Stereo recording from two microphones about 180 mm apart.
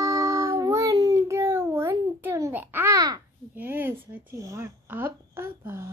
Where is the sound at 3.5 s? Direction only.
10° right (ahead or behind).